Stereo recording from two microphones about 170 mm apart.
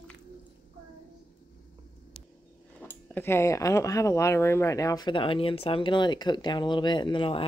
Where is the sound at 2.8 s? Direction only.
10° left (ahead or behind).